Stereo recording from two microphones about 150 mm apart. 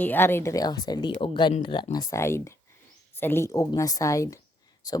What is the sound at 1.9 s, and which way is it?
Speech, 20° left (ahead or behind).